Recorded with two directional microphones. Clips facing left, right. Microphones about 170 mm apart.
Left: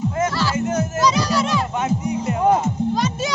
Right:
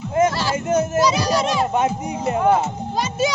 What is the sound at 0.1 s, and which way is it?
Music, 20° right (ahead or behind).